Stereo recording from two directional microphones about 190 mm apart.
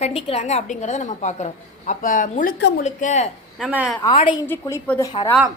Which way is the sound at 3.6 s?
5° right (ahead or behind).